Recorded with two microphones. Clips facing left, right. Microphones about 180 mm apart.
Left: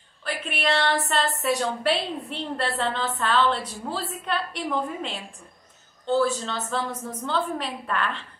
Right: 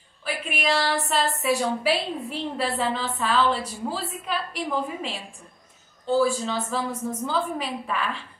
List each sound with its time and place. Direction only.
0.2 s a woman's voice: 5° right (ahead or behind)